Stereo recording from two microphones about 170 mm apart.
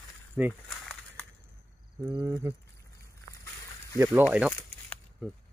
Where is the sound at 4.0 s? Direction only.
10° right (ahead or behind).